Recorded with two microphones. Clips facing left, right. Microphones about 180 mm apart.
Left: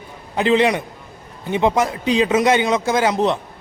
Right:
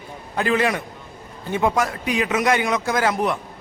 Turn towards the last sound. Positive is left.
turn(degrees=20)  # may be behind; listen again after turning